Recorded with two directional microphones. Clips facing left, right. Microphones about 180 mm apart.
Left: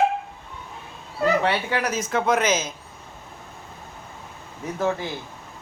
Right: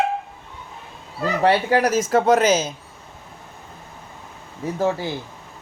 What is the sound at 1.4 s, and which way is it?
Speech, 40° right (ahead or behind).